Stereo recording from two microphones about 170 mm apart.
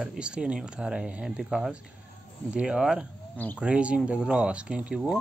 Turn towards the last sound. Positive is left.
turn(degrees=-5)  # may be behind; listen again after turning